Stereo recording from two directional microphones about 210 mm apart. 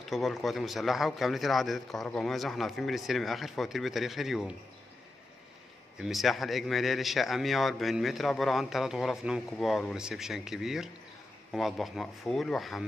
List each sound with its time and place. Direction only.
0.0 s a man's voice: centre (ahead or behind)
5.9 s a man's voice: centre (ahead or behind)